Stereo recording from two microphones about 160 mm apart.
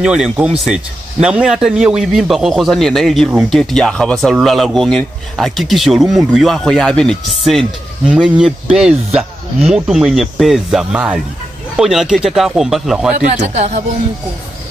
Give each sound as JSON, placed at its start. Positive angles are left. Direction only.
{"t": 0.0, "sound": "a man's voice", "side_deg": -5}
{"t": 13.1, "sound": "speech", "side_deg": -45}